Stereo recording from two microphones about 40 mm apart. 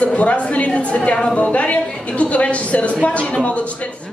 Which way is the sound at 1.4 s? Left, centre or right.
Left.